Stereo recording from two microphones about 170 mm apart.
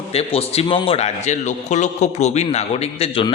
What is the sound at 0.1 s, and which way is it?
A man's voice, 35° left (ahead or behind).